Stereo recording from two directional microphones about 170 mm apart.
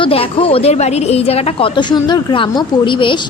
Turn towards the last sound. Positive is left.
turn(degrees=30)  # may be behind; listen again after turning